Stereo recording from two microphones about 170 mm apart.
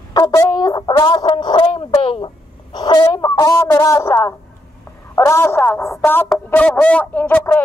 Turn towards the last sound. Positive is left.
turn(degrees=10)  # may be behind; listen again after turning